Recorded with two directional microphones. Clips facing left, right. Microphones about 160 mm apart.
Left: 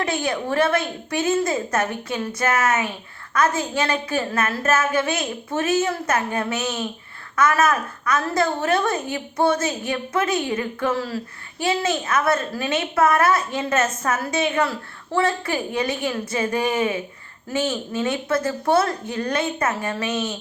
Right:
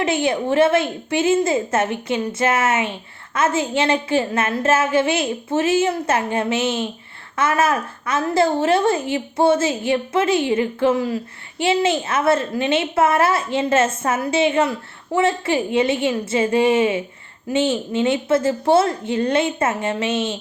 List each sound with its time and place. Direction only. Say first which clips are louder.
0.0 s a woman's voice: right 4 dB; 25° right (ahead or behind)